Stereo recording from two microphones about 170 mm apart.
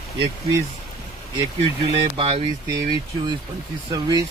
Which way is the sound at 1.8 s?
35° right (ahead or behind).